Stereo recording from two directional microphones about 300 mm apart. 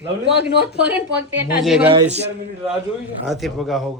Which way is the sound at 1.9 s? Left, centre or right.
Right.